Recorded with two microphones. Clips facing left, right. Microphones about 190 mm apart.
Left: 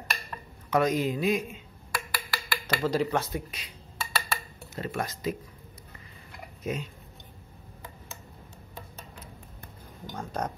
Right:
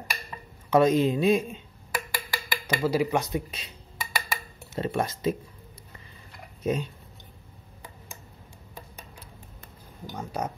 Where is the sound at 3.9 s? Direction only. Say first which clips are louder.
Even; 15° right (ahead or behind).